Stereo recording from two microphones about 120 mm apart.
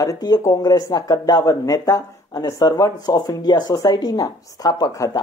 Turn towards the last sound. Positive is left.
turn(degrees=30)  # may be behind; listen again after turning